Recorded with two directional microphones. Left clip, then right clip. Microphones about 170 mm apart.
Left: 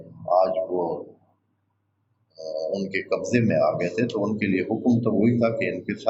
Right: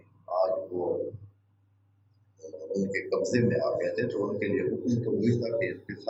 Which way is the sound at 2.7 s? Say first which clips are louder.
Right 3 dB; 45° left (ahead or behind).